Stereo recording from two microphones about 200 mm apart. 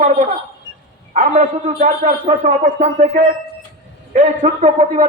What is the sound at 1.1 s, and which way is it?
A man's voice, 40° right (ahead or behind).